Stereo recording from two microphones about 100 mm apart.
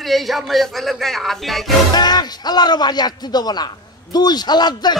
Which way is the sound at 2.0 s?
45° left (ahead or behind).